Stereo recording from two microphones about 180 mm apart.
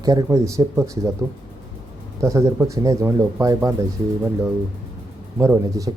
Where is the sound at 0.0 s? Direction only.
20° right (ahead or behind).